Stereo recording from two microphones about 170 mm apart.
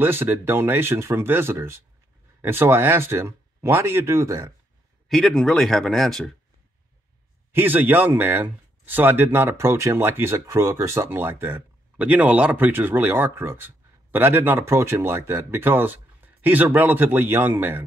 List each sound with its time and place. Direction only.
0.0 s speech: 15° right (ahead or behind)
5.0 s speech: centre (ahead or behind)
7.5 s speech: 10° right (ahead or behind)